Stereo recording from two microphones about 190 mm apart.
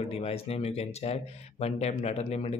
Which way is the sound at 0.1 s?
30° left (ahead or behind).